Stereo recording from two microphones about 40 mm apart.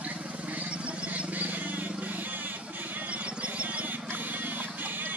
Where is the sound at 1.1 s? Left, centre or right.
Right.